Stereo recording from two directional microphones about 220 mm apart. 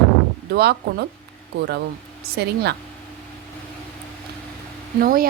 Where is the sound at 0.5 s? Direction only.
45° right (ahead or behind).